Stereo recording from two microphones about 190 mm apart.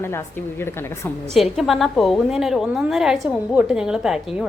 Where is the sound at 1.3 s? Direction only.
Centre (ahead or behind).